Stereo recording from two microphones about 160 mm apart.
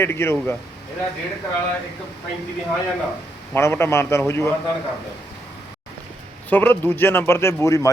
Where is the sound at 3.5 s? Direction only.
15° left (ahead or behind).